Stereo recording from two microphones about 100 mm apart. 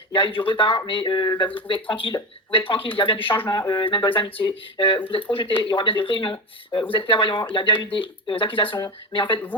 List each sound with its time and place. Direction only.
0.1 s speech: 55° left (ahead or behind)
1.6 s speech: 55° left (ahead or behind)
3.5 s speech: 45° left (ahead or behind)
3.8 s speech: 55° left (ahead or behind)